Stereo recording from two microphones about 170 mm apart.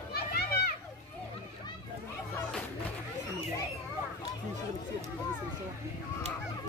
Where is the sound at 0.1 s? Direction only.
65° left (ahead or behind).